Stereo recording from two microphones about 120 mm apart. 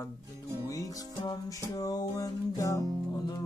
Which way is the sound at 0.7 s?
30° left (ahead or behind).